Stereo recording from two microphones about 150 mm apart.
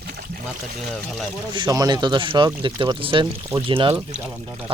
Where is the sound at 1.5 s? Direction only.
30° right (ahead or behind).